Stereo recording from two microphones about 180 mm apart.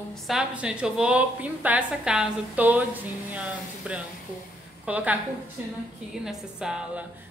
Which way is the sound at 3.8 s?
5° right (ahead or behind).